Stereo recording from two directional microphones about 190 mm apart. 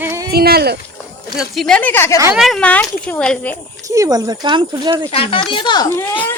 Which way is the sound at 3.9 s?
15° right (ahead or behind).